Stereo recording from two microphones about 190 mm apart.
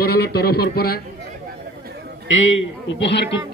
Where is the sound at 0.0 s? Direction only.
55° left (ahead or behind).